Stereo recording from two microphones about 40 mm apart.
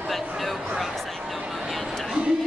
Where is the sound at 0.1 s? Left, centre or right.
Centre.